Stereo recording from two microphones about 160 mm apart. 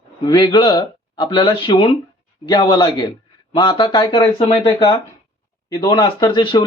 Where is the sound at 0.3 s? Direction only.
30° left (ahead or behind).